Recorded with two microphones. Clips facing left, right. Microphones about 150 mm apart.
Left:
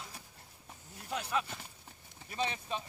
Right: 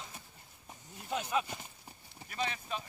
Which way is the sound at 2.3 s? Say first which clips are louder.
Left 1 dB; 25° left (ahead or behind).